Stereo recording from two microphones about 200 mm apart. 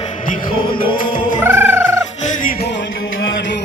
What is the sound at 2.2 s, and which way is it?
Music, 40° left (ahead or behind).